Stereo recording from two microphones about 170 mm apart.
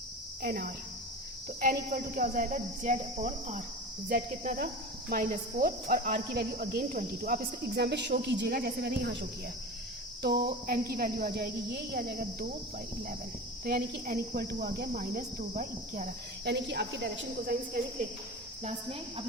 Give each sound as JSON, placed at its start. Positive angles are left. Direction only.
{"t": 0.4, "sound": "speech", "side_deg": -65}
{"t": 1.6, "sound": "speech", "side_deg": -50}
{"t": 10.2, "sound": "speech", "side_deg": -65}
{"t": 13.7, "sound": "speech", "side_deg": -65}
{"t": 16.4, "sound": "cricket", "side_deg": -85}
{"t": 18.6, "sound": "a woman's voice", "side_deg": -40}